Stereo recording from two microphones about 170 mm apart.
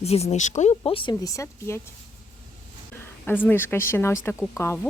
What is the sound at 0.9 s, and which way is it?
Speech, 30° left (ahead or behind).